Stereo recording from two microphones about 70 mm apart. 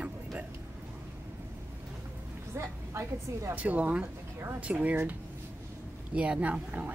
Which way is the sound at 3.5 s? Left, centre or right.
Right.